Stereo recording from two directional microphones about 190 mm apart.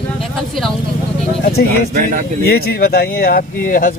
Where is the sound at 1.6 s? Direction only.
45° right (ahead or behind).